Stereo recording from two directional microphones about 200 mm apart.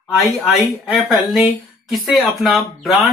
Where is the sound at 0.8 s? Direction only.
Centre (ahead or behind).